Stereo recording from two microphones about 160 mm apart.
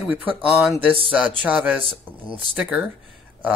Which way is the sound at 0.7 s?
35° right (ahead or behind).